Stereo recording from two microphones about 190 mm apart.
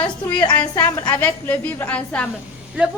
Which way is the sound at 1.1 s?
10° left (ahead or behind).